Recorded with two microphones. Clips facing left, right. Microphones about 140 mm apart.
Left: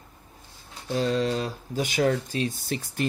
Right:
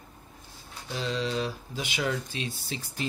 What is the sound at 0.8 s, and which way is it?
Speech, 45° left (ahead or behind).